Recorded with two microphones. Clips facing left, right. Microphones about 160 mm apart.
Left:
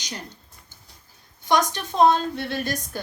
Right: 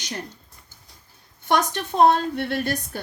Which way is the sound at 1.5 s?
55° right (ahead or behind).